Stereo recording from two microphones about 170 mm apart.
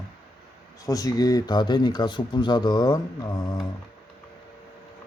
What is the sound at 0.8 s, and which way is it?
Speech, 20° left (ahead or behind).